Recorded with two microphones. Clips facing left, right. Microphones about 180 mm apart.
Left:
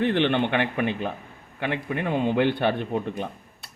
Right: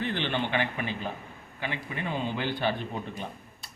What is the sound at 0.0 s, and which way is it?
Speech, 65° left (ahead or behind).